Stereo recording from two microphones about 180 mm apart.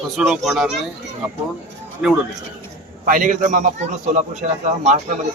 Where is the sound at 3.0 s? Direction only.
45° right (ahead or behind).